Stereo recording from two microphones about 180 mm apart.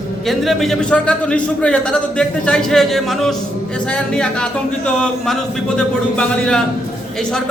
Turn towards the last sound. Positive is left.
turn(degrees=5)  # may be behind; listen again after turning